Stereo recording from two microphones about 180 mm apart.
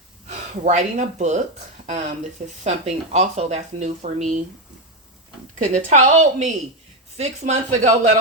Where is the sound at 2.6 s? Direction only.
40° right (ahead or behind).